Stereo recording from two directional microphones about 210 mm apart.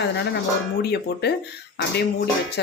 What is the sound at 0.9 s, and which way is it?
Speech, 50° left (ahead or behind).